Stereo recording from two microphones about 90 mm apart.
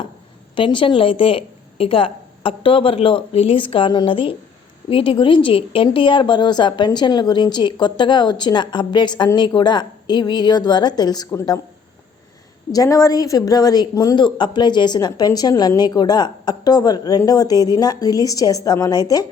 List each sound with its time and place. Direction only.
0.5 s a woman's voice: 70° left (ahead or behind); by 11.3 s 50° left (ahead or behind)
12.7 s a woman's voice: 40° left (ahead or behind)
14.2 s speech: 60° left (ahead or behind); by 19.2 s 45° left (ahead or behind)